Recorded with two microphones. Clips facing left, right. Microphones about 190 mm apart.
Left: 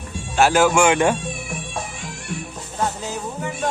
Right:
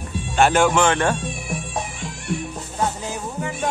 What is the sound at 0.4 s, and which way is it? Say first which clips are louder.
Speech: left 1 dB; 5° left (ahead or behind).